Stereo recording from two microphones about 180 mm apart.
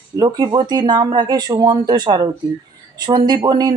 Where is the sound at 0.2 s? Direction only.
20° right (ahead or behind).